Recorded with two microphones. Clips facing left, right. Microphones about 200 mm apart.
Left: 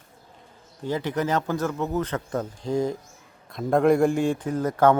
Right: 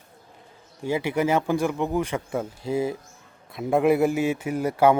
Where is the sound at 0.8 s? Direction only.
10° right (ahead or behind).